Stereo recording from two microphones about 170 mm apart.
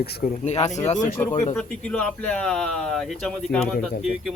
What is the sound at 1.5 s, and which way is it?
Speech, 5° left (ahead or behind).